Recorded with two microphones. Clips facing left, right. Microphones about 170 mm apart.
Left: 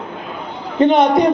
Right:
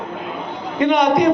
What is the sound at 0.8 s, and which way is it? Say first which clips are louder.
Speech: left 3 dB; 30° left (ahead or behind).